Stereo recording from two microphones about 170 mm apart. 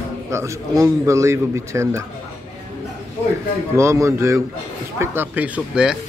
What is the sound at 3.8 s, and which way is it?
A man's voice, 15° right (ahead or behind).